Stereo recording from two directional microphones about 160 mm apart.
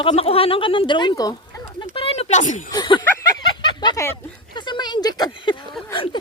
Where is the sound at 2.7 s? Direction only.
30° left (ahead or behind).